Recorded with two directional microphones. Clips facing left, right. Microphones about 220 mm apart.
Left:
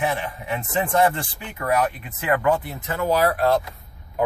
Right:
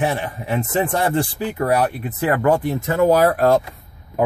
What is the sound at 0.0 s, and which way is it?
Speech, 35° right (ahead or behind).